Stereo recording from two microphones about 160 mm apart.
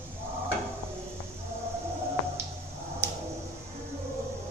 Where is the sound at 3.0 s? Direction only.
15° right (ahead or behind).